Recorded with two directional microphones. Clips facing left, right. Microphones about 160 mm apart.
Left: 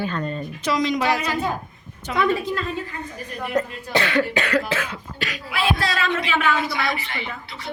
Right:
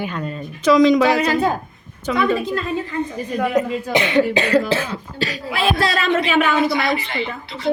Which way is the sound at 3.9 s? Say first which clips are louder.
Right 4 dB; 20° right (ahead or behind).